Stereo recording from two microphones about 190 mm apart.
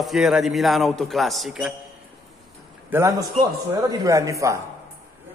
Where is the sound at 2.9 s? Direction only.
15° right (ahead or behind).